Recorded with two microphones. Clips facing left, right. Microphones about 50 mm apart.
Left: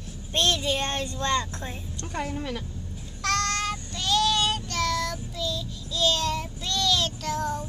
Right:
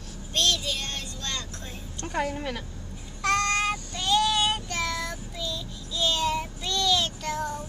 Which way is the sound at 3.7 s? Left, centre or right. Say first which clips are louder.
Right 1 dB; centre.